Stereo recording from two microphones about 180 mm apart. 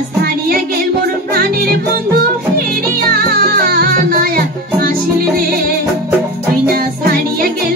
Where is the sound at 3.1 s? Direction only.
55° right (ahead or behind).